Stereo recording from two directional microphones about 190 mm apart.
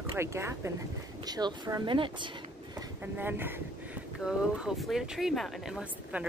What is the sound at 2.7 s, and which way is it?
Speech, 10° right (ahead or behind).